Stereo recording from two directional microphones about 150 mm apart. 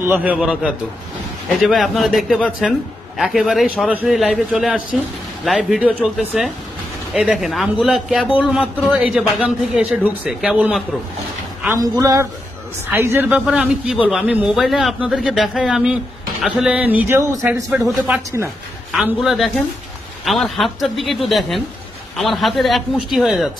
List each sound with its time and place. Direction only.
0.0 s a man's voice: 10° right (ahead or behind)
11.6 s a man's voice: 20° right (ahead or behind)
17.7 s a man's voice: 5° right (ahead or behind)
19.2 s a man's voice: centre (ahead or behind)